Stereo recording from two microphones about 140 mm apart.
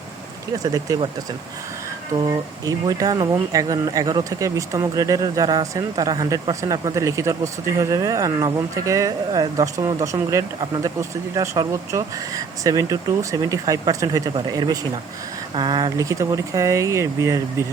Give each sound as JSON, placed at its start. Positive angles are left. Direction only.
{"t": 0.6, "sound": "speech", "side_deg": -25}
{"t": 2.2, "sound": "speech", "side_deg": -25}